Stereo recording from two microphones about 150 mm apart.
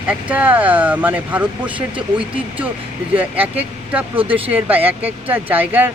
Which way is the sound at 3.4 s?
10° right (ahead or behind).